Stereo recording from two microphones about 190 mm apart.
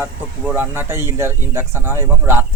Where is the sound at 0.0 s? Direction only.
10° right (ahead or behind).